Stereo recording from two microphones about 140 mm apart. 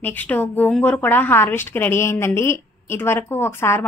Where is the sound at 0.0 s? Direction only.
10° left (ahead or behind).